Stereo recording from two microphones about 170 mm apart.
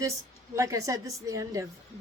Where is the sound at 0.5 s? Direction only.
20° right (ahead or behind).